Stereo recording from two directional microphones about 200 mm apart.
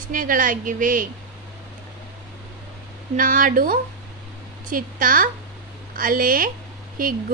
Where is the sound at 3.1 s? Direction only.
45° right (ahead or behind).